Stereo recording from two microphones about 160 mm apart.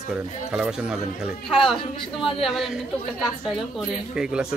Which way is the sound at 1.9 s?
30° left (ahead or behind).